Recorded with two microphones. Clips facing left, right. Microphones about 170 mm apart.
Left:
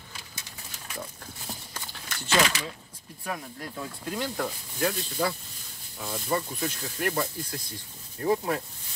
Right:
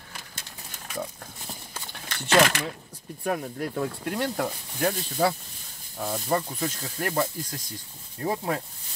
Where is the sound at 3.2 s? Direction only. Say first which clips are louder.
Right 7 dB; 50° right (ahead or behind).